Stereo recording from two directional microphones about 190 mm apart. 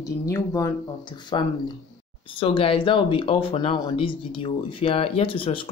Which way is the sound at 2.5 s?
30° left (ahead or behind).